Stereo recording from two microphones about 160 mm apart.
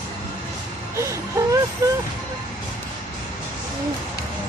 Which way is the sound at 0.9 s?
20° right (ahead or behind).